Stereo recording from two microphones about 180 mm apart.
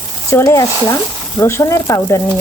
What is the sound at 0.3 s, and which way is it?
Speech, 15° left (ahead or behind).